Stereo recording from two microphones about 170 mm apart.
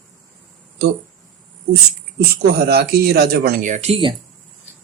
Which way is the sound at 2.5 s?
65° right (ahead or behind).